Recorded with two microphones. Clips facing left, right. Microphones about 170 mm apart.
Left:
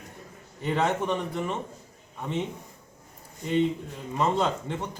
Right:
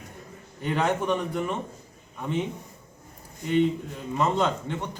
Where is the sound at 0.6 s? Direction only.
Centre (ahead or behind).